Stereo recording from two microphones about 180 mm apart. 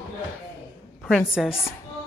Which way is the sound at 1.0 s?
Centre (ahead or behind).